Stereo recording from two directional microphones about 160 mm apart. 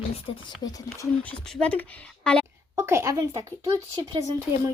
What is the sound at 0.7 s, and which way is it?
Speech, 20° left (ahead or behind).